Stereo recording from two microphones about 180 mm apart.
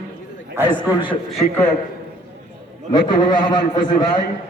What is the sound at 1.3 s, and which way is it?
Speech, centre (ahead or behind).